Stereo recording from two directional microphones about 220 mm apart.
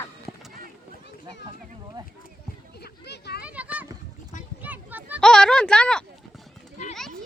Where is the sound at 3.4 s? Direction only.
5° right (ahead or behind).